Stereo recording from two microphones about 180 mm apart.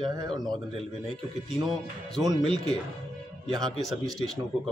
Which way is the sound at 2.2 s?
25° right (ahead or behind).